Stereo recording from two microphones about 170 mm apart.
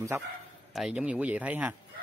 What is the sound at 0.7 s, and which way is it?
Speech, 5° right (ahead or behind).